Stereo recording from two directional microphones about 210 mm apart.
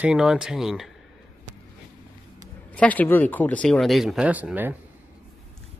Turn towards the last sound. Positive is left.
turn(degrees=-10)  # may be behind; listen again after turning